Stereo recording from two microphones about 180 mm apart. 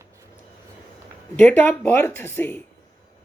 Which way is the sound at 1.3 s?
10° left (ahead or behind).